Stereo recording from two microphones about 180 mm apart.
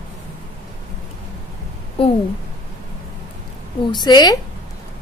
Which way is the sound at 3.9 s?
25° left (ahead or behind).